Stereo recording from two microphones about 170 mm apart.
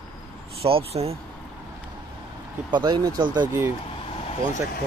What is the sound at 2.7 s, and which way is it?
Speech, 25° right (ahead or behind).